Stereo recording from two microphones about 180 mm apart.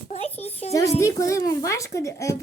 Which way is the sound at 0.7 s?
20° left (ahead or behind).